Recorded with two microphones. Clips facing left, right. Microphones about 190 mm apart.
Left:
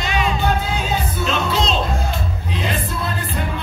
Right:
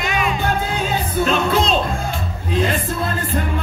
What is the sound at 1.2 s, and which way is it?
Music, 50° right (ahead or behind).